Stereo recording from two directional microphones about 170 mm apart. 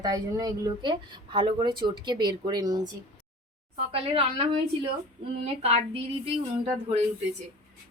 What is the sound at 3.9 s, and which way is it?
Speech, 35° right (ahead or behind).